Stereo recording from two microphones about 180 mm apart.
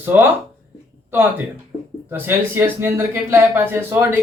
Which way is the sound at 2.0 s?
10° right (ahead or behind).